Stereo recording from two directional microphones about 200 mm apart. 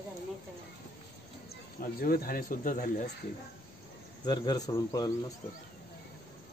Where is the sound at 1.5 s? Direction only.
50° left (ahead or behind).